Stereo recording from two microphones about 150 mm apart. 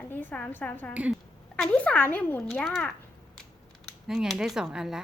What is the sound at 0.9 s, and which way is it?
Speech, 10° right (ahead or behind).